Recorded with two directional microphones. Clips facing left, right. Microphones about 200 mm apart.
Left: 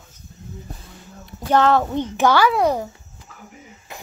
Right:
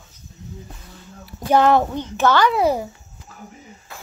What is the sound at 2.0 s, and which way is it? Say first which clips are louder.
Speech: left 1 dB; 15° left (ahead or behind).